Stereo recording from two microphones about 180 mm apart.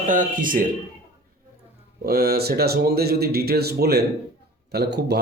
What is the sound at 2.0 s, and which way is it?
Speech, 60° right (ahead or behind).